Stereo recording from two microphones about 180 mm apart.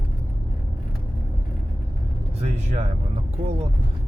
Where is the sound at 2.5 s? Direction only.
40° right (ahead or behind).